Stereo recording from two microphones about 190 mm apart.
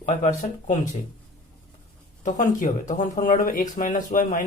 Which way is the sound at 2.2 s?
40° left (ahead or behind).